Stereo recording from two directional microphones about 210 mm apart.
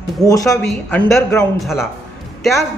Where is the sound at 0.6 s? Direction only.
5° left (ahead or behind).